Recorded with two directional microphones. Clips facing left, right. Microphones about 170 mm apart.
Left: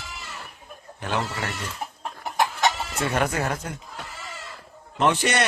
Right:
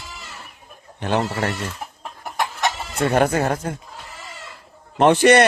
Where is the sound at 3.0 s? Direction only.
35° right (ahead or behind).